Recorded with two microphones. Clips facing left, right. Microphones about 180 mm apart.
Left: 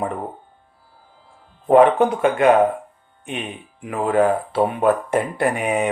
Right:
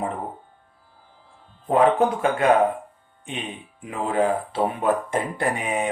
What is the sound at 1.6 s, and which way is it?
Speech, 65° left (ahead or behind).